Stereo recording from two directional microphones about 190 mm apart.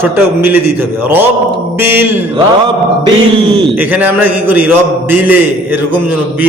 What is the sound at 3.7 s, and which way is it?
A man's voice, 10° right (ahead or behind).